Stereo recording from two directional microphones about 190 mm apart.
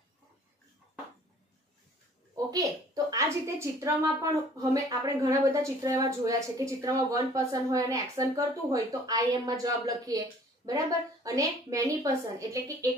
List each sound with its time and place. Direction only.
2.3 s a woman's voice: 20° right (ahead or behind)